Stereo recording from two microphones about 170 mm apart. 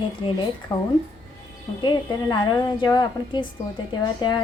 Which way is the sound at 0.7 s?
25° left (ahead or behind).